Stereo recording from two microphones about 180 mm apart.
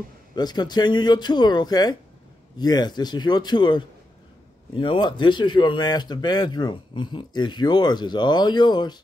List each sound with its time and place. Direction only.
0.4 s speech: 25° left (ahead or behind)